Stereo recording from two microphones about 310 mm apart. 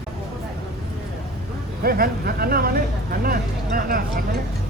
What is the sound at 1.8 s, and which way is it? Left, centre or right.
Speech, right.